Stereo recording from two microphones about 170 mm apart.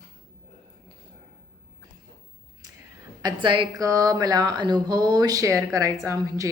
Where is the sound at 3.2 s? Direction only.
25° right (ahead or behind).